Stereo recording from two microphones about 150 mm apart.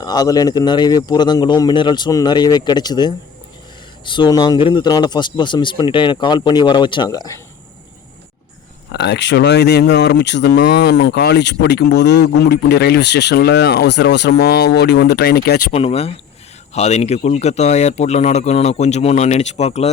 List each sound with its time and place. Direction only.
0.0 s speech: 25° left (ahead or behind)
8.9 s speech: 90° left
15.7 s speech: 40° left (ahead or behind)